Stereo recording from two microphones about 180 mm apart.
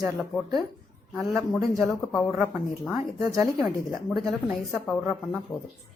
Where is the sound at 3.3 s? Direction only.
20° right (ahead or behind).